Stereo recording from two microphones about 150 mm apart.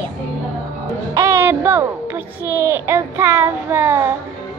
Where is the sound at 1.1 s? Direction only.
20° right (ahead or behind).